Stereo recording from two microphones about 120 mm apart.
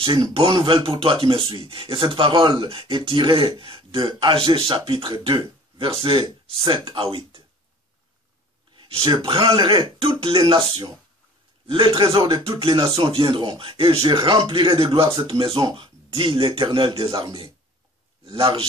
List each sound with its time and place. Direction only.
0.0 s speech: 45° right (ahead or behind)
8.7 s a man's voice: 45° right (ahead or behind)